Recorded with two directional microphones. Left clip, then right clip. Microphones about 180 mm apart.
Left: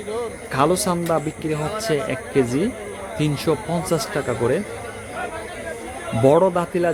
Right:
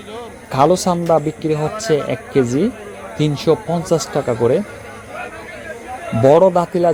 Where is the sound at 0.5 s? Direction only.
20° right (ahead or behind).